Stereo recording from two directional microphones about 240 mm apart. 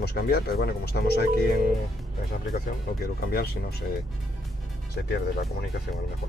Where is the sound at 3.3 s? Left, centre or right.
Left.